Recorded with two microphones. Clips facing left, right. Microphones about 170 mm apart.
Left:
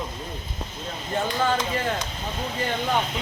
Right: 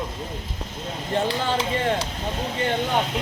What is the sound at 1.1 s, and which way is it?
Speech, 30° right (ahead or behind).